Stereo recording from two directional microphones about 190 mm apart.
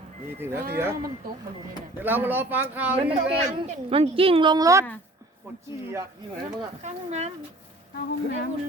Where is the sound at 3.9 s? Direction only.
30° right (ahead or behind); by 5.6 s 10° right (ahead or behind).